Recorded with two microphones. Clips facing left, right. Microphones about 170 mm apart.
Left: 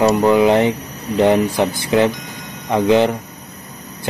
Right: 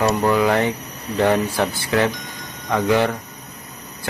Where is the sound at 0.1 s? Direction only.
20° left (ahead or behind).